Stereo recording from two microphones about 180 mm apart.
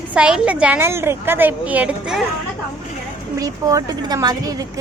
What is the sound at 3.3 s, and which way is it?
Speech, 20° right (ahead or behind).